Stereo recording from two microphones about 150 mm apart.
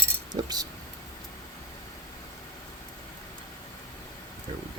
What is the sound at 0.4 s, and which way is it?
Speech, 25° right (ahead or behind).